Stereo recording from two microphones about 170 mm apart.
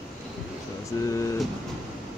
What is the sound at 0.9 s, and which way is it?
Speech, 20° left (ahead or behind).